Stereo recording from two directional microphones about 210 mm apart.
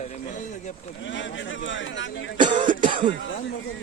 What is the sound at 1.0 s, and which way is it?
Speech, 60° left (ahead or behind).